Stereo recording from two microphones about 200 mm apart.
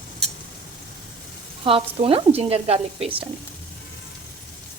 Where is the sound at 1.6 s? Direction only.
25° right (ahead or behind).